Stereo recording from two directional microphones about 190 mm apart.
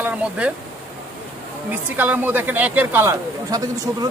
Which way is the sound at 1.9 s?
10° right (ahead or behind).